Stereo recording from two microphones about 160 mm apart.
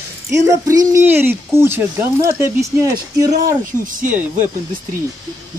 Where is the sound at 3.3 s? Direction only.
60° right (ahead or behind).